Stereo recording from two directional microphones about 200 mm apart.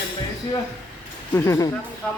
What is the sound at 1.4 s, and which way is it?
Speech, 15° left (ahead or behind).